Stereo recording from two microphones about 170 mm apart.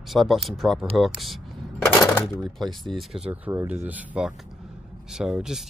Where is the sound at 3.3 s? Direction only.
15° right (ahead or behind).